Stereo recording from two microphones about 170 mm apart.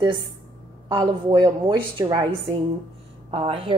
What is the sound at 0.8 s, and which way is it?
A woman's voice, 25° right (ahead or behind).